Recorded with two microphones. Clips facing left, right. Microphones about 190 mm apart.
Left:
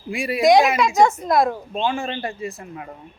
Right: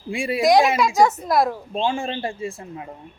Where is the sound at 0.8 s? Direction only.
Centre (ahead or behind).